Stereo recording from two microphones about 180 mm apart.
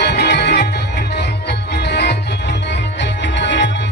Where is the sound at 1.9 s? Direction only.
70° left (ahead or behind).